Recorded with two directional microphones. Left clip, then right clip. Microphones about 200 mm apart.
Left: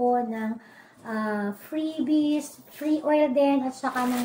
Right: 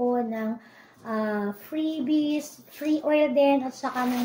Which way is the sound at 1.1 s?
Centre (ahead or behind).